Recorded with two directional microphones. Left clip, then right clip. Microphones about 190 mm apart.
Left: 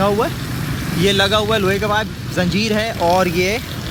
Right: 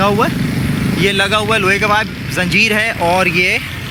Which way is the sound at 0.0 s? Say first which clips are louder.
Right 3 dB; 5° left (ahead or behind).